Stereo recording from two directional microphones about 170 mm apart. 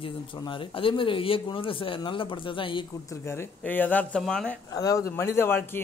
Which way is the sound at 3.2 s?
15° left (ahead or behind).